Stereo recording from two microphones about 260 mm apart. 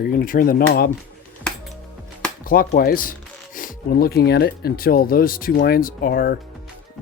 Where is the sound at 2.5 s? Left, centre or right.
Left.